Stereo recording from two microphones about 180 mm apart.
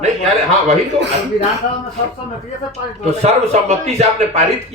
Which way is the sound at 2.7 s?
35° right (ahead or behind).